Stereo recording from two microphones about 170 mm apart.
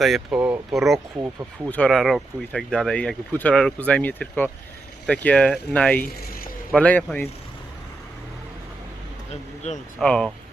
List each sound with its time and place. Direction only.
0.0 s speech: centre (ahead or behind)
0.3 s speech: 10° right (ahead or behind); by 7.3 s 10° left (ahead or behind)
9.6 s speech: 40° left (ahead or behind)
10.0 s speech: 5° left (ahead or behind)